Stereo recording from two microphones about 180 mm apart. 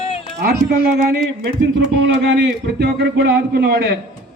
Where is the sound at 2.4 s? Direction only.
65° right (ahead or behind).